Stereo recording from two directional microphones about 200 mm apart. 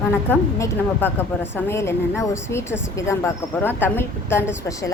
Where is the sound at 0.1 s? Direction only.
10° left (ahead or behind).